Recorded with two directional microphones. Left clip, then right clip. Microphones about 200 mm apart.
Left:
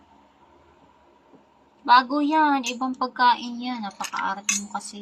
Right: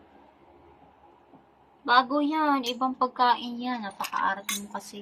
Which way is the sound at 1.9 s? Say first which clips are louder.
Left 5 dB; 30° left (ahead or behind).